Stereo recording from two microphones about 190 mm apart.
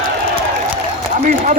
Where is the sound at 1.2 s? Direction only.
40° right (ahead or behind).